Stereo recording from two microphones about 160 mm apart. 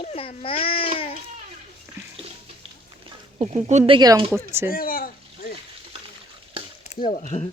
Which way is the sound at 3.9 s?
30° right (ahead or behind).